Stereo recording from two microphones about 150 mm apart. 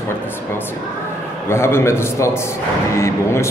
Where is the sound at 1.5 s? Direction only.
15° left (ahead or behind).